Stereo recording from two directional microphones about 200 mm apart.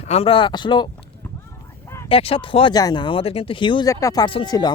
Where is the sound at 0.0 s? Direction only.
30° left (ahead or behind).